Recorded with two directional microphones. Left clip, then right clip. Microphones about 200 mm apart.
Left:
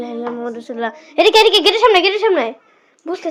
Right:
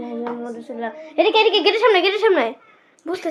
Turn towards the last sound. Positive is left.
turn(degrees=10)  # may be behind; listen again after turning